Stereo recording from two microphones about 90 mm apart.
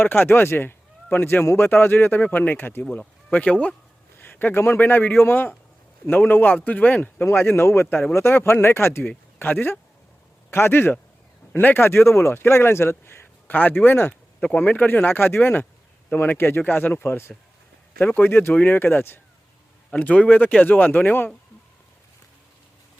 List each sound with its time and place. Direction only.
0.0 s speech: 25° left (ahead or behind)
3.0 s speech: 10° left (ahead or behind)
4.2 s speech: 20° left (ahead or behind)
17.9 s speech: 15° left (ahead or behind)